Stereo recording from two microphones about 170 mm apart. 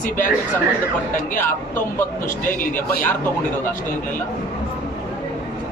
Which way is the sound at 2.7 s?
10° left (ahead or behind).